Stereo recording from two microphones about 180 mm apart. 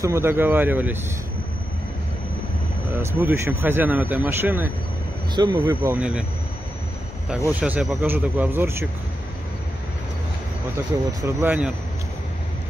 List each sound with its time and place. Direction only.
0.0 s speech: 15° right (ahead or behind)
2.9 s speech: 15° right (ahead or behind)
5.3 s speech: 25° right (ahead or behind)
5.9 s speech: 5° right (ahead or behind)
7.4 s speech: 10° right (ahead or behind)
11.2 s speech: 10° right (ahead or behind)